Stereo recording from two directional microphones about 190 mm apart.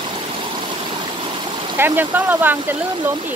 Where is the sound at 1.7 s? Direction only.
10° right (ahead or behind).